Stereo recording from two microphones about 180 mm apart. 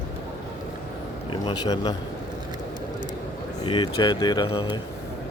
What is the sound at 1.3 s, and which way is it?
Speech, 25° left (ahead or behind).